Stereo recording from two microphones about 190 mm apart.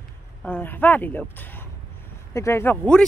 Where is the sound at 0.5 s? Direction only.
10° left (ahead or behind).